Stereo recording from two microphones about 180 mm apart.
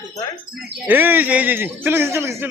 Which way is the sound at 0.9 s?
10° right (ahead or behind).